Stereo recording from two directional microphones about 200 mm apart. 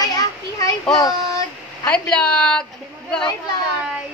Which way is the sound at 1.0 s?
20° left (ahead or behind).